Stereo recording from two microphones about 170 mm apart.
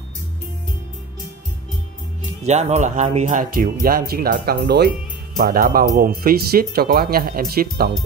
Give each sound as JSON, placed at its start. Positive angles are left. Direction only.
{"t": 2.4, "sound": "speech", "side_deg": -40}
{"t": 5.4, "sound": "speech", "side_deg": -60}